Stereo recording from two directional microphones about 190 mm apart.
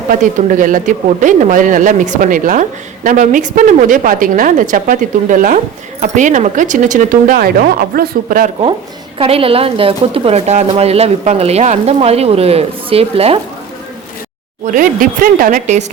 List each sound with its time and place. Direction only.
0.1 s speech: 45° right (ahead or behind)
9.1 s speech: 30° right (ahead or behind)
14.6 s speech: 45° right (ahead or behind)